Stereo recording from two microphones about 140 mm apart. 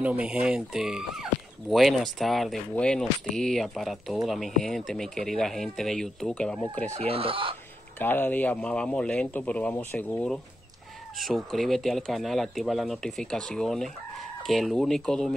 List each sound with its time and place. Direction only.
0.0 s speech: 10° right (ahead or behind)
6.9 s speech: 45° right (ahead or behind)
8.0 s speech: 15° left (ahead or behind)